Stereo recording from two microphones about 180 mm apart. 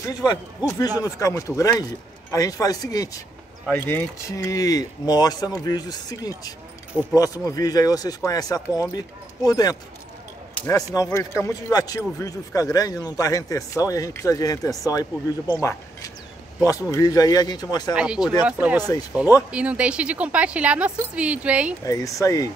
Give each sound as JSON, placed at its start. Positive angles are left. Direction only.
{"t": 0.0, "sound": "speech", "side_deg": 20}
{"t": 6.9, "sound": "speech", "side_deg": 10}
{"t": 10.5, "sound": "a sound", "side_deg": 10}
{"t": 10.8, "sound": "speech", "side_deg": 15}
{"t": 17.9, "sound": "a woman's voice", "side_deg": -5}
{"t": 21.8, "sound": "speech", "side_deg": 20}